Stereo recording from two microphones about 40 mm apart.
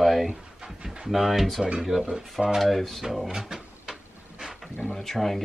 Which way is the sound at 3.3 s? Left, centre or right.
Centre.